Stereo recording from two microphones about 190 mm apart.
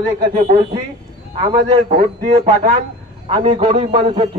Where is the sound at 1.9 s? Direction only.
35° right (ahead or behind).